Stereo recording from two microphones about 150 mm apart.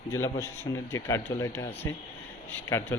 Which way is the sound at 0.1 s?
15° left (ahead or behind).